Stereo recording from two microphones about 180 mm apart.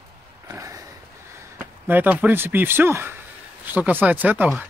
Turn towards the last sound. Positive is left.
turn(degrees=-10)  # may be behind; listen again after turning